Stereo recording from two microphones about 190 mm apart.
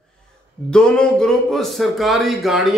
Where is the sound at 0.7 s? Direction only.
5° left (ahead or behind).